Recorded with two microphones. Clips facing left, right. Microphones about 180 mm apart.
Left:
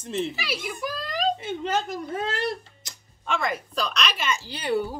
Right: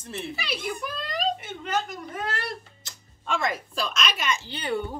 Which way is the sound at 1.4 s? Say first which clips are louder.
Left 3 dB; 25° left (ahead or behind).